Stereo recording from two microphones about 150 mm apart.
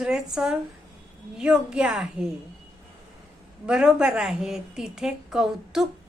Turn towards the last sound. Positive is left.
turn(degrees=-5)  # may be behind; listen again after turning